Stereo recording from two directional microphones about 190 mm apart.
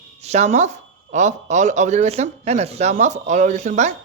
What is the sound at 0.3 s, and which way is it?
Speech, 40° right (ahead or behind).